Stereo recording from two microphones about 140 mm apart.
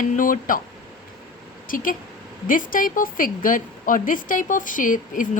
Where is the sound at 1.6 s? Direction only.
75° left (ahead or behind).